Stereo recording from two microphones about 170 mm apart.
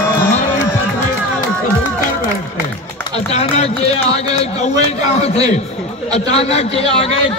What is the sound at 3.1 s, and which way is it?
A man's voice, 35° left (ahead or behind).